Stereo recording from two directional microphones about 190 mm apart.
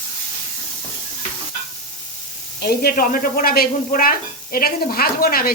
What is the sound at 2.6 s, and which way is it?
Speech, 55° left (ahead or behind).